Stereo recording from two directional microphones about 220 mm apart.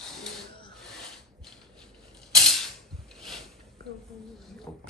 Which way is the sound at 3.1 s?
Centre (ahead or behind).